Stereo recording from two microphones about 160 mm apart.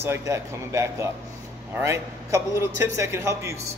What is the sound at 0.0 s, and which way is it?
A man's voice, 15° right (ahead or behind).